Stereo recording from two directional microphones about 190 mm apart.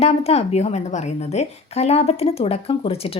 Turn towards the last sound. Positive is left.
turn(degrees=30)  # may be behind; listen again after turning